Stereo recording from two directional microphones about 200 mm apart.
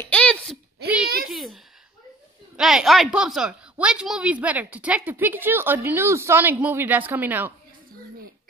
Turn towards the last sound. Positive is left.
turn(degrees=-10)  # may be behind; listen again after turning